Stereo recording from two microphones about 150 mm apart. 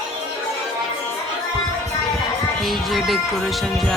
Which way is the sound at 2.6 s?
Centre (ahead or behind).